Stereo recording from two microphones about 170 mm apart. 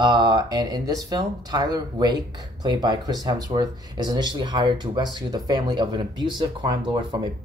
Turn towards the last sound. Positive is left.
turn(degrees=-25)  # may be behind; listen again after turning